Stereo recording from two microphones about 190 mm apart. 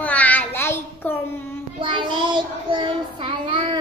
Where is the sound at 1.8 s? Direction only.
25° right (ahead or behind).